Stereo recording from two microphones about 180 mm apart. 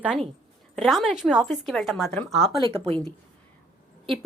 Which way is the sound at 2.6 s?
25° right (ahead or behind).